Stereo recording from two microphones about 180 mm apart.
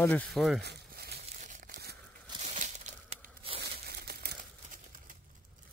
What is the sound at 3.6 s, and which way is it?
Crumpling, 65° right (ahead or behind).